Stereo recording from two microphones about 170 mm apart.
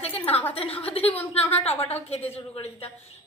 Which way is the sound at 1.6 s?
10° left (ahead or behind).